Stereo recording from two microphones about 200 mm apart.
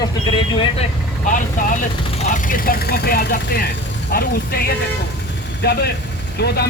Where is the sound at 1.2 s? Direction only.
40° left (ahead or behind).